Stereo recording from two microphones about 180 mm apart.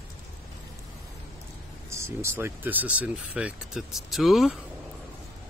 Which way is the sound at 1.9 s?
15° right (ahead or behind).